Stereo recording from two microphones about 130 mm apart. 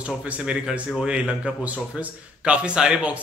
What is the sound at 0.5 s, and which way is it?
Speech, 5° right (ahead or behind).